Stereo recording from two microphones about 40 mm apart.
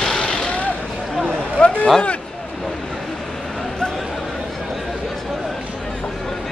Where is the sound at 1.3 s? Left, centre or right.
Left.